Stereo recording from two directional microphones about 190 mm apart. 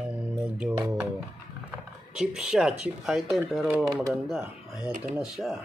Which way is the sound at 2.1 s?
5° right (ahead or behind).